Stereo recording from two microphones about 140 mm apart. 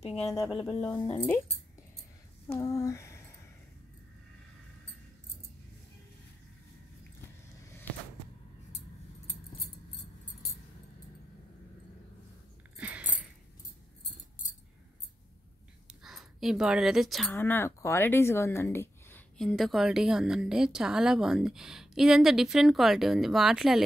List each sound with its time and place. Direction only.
0.3 s a woman's voice: 25° left (ahead or behind)
1.1 s speech: 15° left (ahead or behind)
2.6 s a sound: 25° left (ahead or behind)
12.7 s a sound: 10° right (ahead or behind)
16.0 s speech: centre (ahead or behind)
17.3 s speech: 15° left (ahead or behind)
19.3 s a woman's voice: centre (ahead or behind)